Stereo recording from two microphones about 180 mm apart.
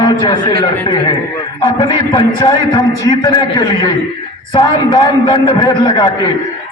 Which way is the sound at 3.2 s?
20° left (ahead or behind).